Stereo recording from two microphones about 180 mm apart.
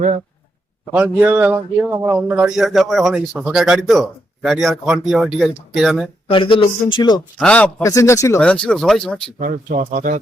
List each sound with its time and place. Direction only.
0.9 s speech: 10° right (ahead or behind)
6.2 s speech: 30° left (ahead or behind)
7.3 s a man's voice: 5° left (ahead or behind)
7.9 s a man's voice: 15° left (ahead or behind)
8.4 s speech: 5° left (ahead or behind)
9.4 s speech: 45° right (ahead or behind)